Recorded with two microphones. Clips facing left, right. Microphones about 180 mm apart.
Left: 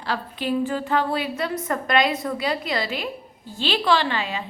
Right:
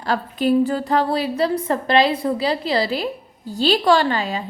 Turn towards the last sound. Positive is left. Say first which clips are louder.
# right 4 dB
turn(degrees=-40)  # may be behind; listen again after turning